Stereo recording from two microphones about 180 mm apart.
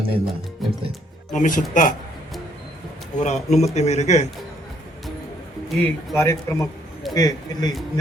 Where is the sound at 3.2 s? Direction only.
40° left (ahead or behind).